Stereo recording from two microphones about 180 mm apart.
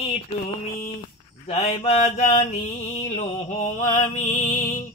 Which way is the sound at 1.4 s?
35° left (ahead or behind).